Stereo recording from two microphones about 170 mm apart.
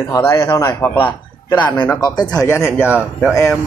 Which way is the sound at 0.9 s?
30° left (ahead or behind).